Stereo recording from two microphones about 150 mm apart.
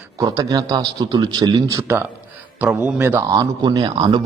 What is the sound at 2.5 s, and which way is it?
Speech, 10° right (ahead or behind).